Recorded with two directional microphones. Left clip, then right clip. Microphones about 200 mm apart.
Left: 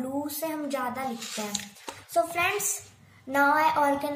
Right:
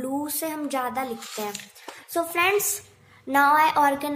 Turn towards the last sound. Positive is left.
turn(degrees=-50)  # may be behind; listen again after turning